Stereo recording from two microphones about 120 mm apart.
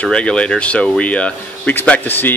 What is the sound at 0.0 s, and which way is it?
Speech, 10° left (ahead or behind).